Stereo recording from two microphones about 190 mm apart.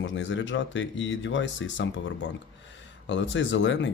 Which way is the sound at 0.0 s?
75° left (ahead or behind).